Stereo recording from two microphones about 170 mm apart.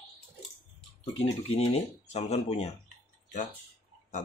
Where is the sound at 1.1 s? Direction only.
40° left (ahead or behind).